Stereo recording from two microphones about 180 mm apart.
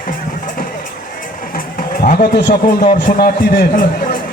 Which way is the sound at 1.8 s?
55° left (ahead or behind).